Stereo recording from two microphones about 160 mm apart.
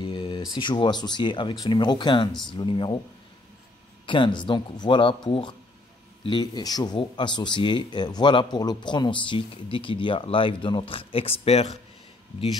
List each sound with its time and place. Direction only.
0.0 s a sound: 30° left (ahead or behind)
0.6 s speech: 30° left (ahead or behind)
4.0 s speech: 30° left (ahead or behind)